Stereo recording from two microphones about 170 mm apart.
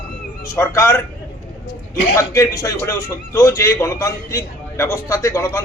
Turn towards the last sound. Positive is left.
turn(degrees=15)  # may be behind; listen again after turning